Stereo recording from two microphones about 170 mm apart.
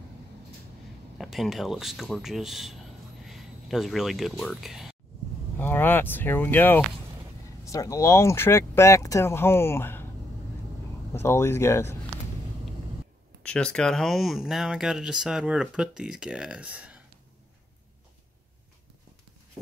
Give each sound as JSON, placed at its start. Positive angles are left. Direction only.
{"t": 1.1, "sound": "speech", "side_deg": 0}
{"t": 5.6, "sound": "speech", "side_deg": 10}
{"t": 11.1, "sound": "speech", "side_deg": 15}
{"t": 13.4, "sound": "speech", "side_deg": 5}